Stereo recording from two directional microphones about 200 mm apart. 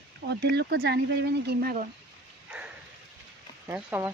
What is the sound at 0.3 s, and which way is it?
Speech, 55° right (ahead or behind).